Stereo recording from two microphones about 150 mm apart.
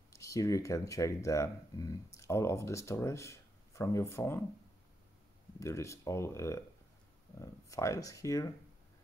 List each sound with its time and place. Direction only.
0.1 s speech: 20° left (ahead or behind)
5.6 s speech: 20° left (ahead or behind)
7.7 s speech: 20° left (ahead or behind)